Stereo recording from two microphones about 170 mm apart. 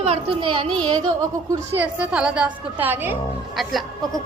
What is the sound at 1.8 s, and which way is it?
A woman's voice, 10° right (ahead or behind).